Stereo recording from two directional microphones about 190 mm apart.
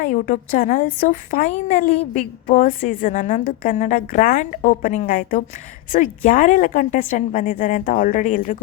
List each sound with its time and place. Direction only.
0.0 s a woman's voice: 45° left (ahead or behind)